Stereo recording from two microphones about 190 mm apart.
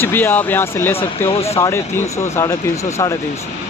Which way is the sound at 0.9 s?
30° left (ahead or behind).